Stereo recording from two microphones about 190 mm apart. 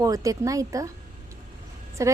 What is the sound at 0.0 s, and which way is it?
Speech, 20° right (ahead or behind).